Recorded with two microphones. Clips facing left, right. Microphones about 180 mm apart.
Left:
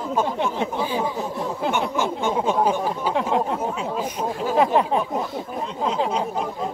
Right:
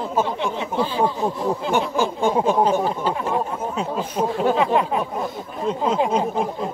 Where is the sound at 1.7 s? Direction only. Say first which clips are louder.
Right 3 dB; 35° right (ahead or behind).